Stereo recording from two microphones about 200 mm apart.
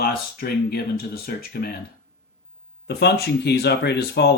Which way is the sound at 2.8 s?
55° left (ahead or behind).